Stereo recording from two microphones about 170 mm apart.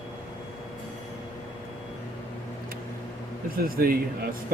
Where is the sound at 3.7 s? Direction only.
60° right (ahead or behind).